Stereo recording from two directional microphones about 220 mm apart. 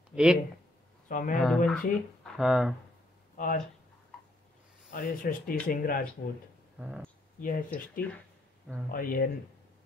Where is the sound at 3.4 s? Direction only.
40° left (ahead or behind).